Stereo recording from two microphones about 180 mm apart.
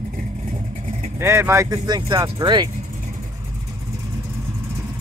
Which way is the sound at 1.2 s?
15° right (ahead or behind).